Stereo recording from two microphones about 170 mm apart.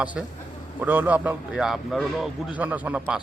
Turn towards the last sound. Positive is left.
turn(degrees=-10)  # may be behind; listen again after turning